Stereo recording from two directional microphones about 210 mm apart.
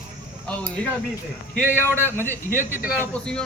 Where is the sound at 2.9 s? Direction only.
5° left (ahead or behind).